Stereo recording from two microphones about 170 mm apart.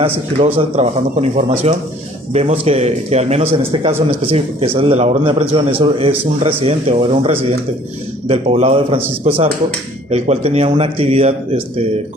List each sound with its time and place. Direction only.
0.4 s speech: 35° right (ahead or behind)